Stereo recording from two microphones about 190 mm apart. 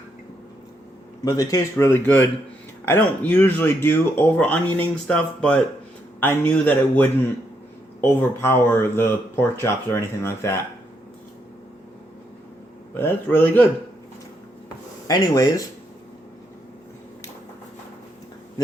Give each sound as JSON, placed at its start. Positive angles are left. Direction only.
{"t": 1.2, "sound": "speech", "side_deg": 20}
{"t": 13.0, "sound": "speech", "side_deg": 10}
{"t": 15.0, "sound": "speech", "side_deg": 20}